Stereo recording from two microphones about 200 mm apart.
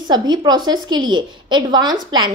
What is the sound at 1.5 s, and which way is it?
Speech, 20° right (ahead or behind).